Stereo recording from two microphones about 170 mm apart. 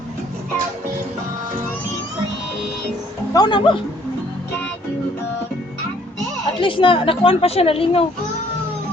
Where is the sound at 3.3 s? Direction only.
25° left (ahead or behind).